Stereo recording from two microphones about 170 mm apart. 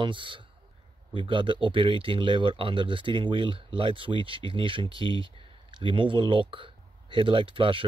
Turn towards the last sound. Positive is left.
turn(degrees=-30)  # may be behind; listen again after turning